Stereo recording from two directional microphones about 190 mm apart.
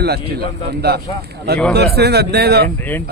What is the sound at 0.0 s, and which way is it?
Speech, 55° right (ahead or behind).